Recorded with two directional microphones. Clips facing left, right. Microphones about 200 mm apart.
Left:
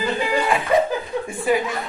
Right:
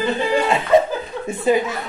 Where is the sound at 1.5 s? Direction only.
20° right (ahead or behind).